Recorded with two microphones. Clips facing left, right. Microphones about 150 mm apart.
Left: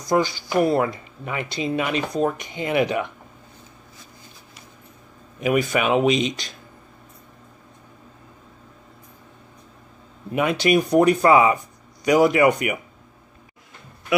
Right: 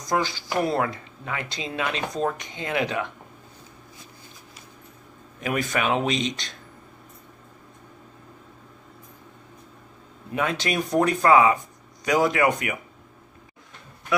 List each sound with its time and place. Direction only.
0.0 s speech: centre (ahead or behind)
5.4 s speech: 5° left (ahead or behind)
10.3 s speech: 10° left (ahead or behind)